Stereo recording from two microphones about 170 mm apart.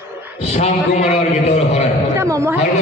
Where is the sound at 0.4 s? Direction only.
40° left (ahead or behind).